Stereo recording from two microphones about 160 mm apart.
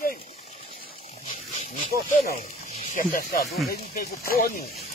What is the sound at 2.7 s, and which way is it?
Snake, 55° left (ahead or behind).